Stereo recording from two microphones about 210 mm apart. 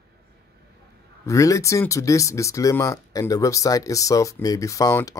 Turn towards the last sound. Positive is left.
turn(degrees=15)  # may be behind; listen again after turning